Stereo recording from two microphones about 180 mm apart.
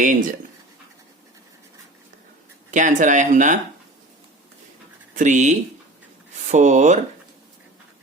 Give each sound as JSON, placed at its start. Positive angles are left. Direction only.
{"t": 0.0, "sound": "speech", "side_deg": -45}
{"t": 2.7, "sound": "speech", "side_deg": -45}
{"t": 5.1, "sound": "speech", "side_deg": -45}